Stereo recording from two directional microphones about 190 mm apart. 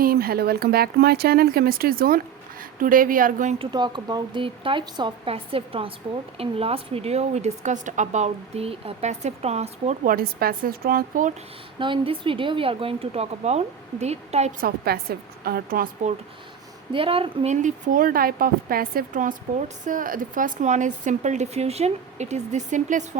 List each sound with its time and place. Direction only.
0.0 s speech: 50° right (ahead or behind)
3.6 s a woman's voice: 25° right (ahead or behind)
10.1 s speech: 50° right (ahead or behind)
11.8 s a woman's voice: 25° right (ahead or behind)
14.9 s speech: 55° right (ahead or behind)
16.9 s a woman's voice: 30° right (ahead or behind)